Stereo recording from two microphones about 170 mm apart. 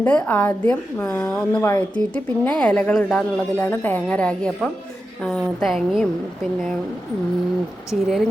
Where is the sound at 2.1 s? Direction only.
10° left (ahead or behind).